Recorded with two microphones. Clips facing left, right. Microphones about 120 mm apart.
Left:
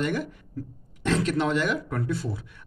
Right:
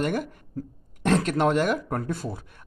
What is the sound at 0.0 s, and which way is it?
Speech, 45° right (ahead or behind).